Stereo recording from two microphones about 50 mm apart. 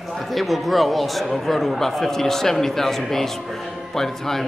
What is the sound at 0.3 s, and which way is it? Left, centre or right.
A man's voice, centre.